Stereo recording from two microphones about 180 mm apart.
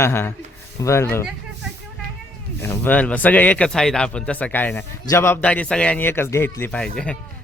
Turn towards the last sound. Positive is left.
turn(degrees=5)  # may be behind; listen again after turning